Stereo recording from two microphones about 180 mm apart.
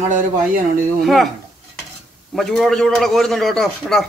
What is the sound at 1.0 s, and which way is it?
Speech, centre (ahead or behind).